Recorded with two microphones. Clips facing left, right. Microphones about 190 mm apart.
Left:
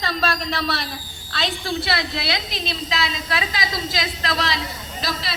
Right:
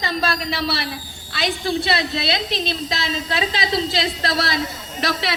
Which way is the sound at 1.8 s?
25° right (ahead or behind).